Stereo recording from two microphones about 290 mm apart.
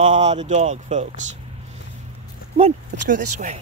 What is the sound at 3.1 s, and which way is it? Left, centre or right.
Speech, right.